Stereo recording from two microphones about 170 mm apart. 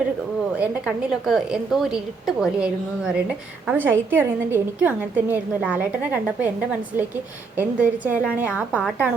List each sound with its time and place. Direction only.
0.6 s a woman's voice: 5° right (ahead or behind)